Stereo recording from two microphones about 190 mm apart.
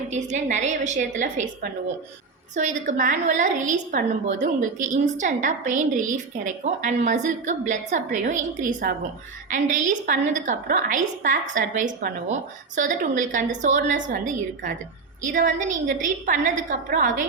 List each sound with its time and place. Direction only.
0.1 s a woman's voice: 40° right (ahead or behind)